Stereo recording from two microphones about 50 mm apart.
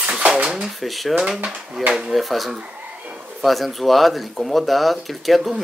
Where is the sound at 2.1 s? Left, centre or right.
Centre.